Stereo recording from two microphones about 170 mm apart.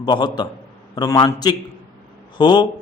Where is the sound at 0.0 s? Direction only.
25° left (ahead or behind).